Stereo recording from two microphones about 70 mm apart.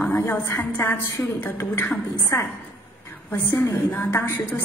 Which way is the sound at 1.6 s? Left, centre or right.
Left.